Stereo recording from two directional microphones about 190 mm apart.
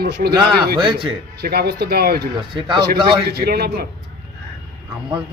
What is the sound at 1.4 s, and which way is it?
Speech, 55° right (ahead or behind).